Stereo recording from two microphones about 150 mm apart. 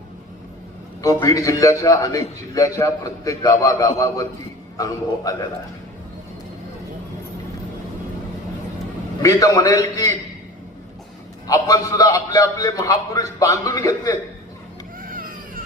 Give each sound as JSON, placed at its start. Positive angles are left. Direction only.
{"t": 1.0, "sound": "a man's voice", "side_deg": 25}
{"t": 9.2, "sound": "a man's voice", "side_deg": 20}
{"t": 11.4, "sound": "a man's voice", "side_deg": 20}
{"t": 15.1, "sound": "baby cry", "side_deg": -70}